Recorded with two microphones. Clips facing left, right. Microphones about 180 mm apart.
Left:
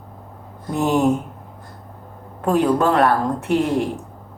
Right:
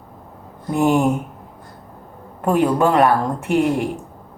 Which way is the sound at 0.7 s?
10° right (ahead or behind).